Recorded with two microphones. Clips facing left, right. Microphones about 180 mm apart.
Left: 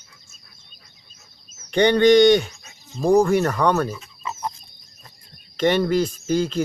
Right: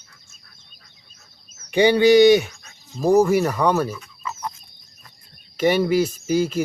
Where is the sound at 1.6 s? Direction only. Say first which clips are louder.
Even; 10° right (ahead or behind).